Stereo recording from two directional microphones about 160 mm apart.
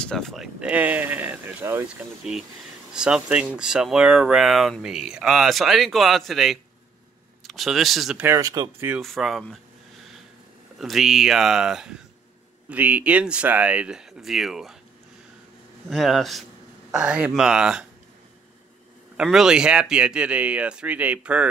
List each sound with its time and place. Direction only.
0.0 s speech: 5° left (ahead or behind)
8.2 s speech: 20° right (ahead or behind)
8.9 s speech: centre (ahead or behind)
10.8 s speech: centre (ahead or behind)
15.9 s speech: centre (ahead or behind)
19.1 s speech: 5° right (ahead or behind)